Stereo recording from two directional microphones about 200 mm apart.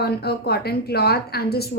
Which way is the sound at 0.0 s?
55° left (ahead or behind).